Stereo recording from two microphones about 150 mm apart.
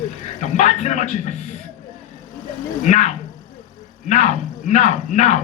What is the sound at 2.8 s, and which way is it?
Speech, 50° left (ahead or behind).